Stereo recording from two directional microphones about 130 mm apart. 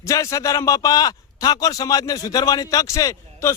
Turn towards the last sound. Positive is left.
turn(degrees=25)  # may be behind; listen again after turning